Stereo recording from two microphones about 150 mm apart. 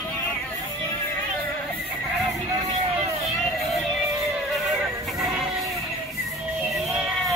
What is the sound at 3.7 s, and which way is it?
Music, centre (ahead or behind).